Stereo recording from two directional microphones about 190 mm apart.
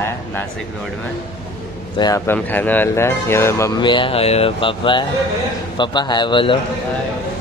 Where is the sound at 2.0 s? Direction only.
20° left (ahead or behind).